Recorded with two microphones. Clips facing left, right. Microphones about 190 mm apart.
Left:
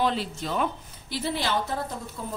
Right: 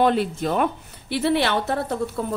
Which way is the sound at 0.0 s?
55° right (ahead or behind).